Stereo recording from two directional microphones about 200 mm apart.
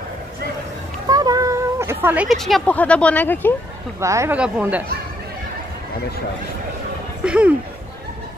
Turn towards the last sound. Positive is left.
turn(degrees=-5)  # may be behind; listen again after turning